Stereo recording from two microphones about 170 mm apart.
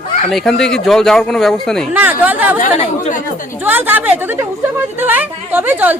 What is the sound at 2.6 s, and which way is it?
Speech, 50° left (ahead or behind).